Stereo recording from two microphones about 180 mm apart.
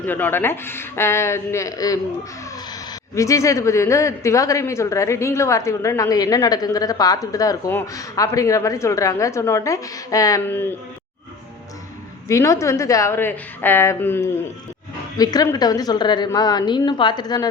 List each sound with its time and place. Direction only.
0.0 s a man's voice: 10° left (ahead or behind)
3.2 s a man's voice: 15° left (ahead or behind)
12.3 s a man's voice: 15° left (ahead or behind)